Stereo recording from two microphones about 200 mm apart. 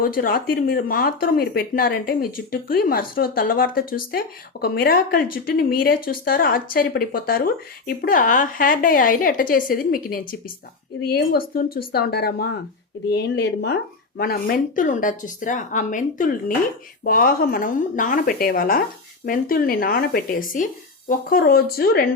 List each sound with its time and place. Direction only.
0.0 s speech: 45° left (ahead or behind)